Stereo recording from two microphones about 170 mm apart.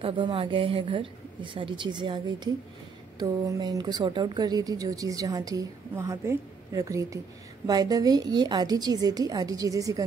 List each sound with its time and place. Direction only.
0.0 s speech: 30° right (ahead or behind)